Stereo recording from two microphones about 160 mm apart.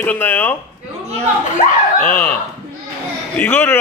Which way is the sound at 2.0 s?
10° left (ahead or behind).